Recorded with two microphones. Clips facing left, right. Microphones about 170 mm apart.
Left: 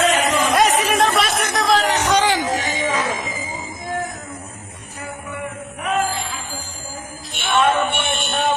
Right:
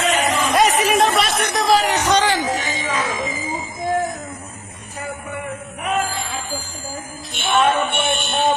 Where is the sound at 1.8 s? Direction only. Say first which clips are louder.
Even; 10° right (ahead or behind).